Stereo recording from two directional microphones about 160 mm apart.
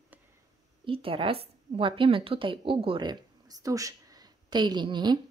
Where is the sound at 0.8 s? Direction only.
35° right (ahead or behind).